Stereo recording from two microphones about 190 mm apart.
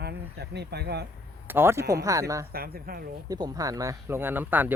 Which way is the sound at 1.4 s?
10° right (ahead or behind).